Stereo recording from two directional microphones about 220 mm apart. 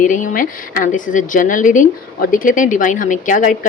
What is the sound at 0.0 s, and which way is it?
Speech, 35° left (ahead or behind).